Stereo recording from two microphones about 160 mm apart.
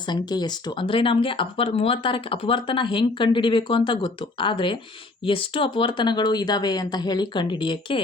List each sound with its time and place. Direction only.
0.0 s speech: 25° left (ahead or behind)